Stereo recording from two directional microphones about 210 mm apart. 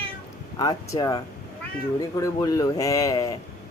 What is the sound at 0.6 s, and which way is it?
Speech, 20° left (ahead or behind).